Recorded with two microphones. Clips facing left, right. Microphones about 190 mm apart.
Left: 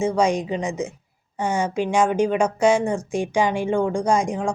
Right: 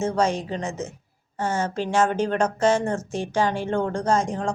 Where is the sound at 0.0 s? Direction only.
10° left (ahead or behind).